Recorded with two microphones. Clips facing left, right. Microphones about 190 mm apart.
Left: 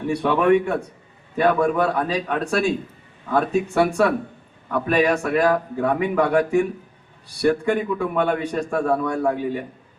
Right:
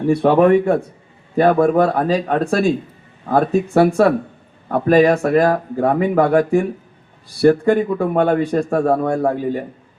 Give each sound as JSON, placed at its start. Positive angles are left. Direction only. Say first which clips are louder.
{"t": 0.3, "sound": "a man's voice", "louder": "right 5 dB", "side_deg": -40}